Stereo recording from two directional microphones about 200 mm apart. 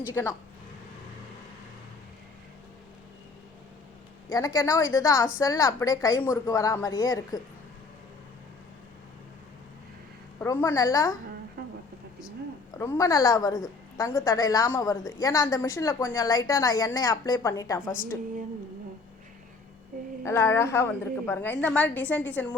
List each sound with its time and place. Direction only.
0.1 s a woman's voice: 10° left (ahead or behind)
4.3 s a woman's voice: 15° left (ahead or behind)
10.4 s a woman's voice: 10° left (ahead or behind)
12.8 s a woman's voice: 15° left (ahead or behind)
20.2 s a woman's voice: 15° left (ahead or behind)